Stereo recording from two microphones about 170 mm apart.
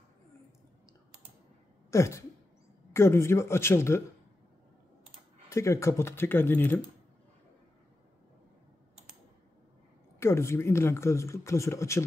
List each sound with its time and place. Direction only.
1.9 s speech: 15° left (ahead or behind)
5.5 s speech: 15° left (ahead or behind)
10.2 s speech: 15° left (ahead or behind)